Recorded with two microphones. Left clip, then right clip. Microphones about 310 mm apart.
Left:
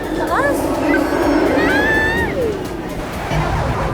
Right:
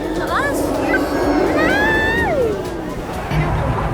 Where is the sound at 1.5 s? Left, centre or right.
Centre.